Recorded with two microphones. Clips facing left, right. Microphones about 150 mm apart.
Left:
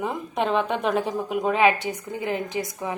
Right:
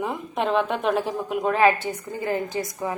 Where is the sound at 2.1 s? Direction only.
20° left (ahead or behind).